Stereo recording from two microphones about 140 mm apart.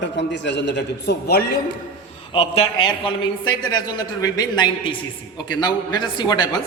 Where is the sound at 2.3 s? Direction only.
40° left (ahead or behind).